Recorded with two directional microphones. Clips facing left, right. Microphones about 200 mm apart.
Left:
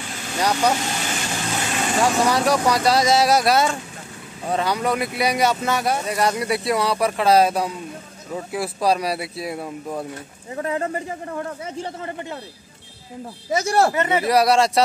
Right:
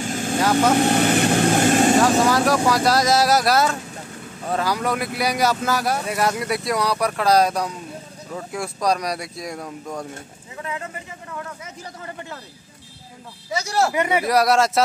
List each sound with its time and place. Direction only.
0.0 s vehicle: 45° right (ahead or behind)
0.7 s speech: 55° right (ahead or behind)
2.0 s speech: centre (ahead or behind)
10.5 s a man's voice: 40° left (ahead or behind)
13.9 s speech: 10° right (ahead or behind)
14.2 s speech: centre (ahead or behind)